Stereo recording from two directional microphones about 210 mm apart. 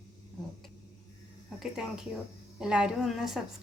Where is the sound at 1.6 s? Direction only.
5° right (ahead or behind).